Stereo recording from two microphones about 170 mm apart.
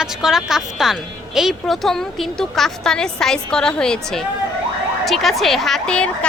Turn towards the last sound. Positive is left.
turn(degrees=5)  # may be behind; listen again after turning